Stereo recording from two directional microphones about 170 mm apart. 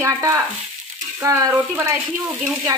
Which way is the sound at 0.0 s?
15° right (ahead or behind).